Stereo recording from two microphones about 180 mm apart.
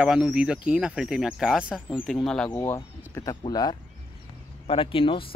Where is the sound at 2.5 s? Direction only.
15° left (ahead or behind).